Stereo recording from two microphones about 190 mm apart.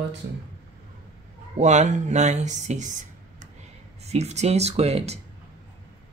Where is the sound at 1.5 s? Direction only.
40° right (ahead or behind).